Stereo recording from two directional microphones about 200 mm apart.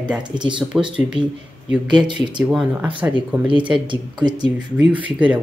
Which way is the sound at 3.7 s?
25° right (ahead or behind).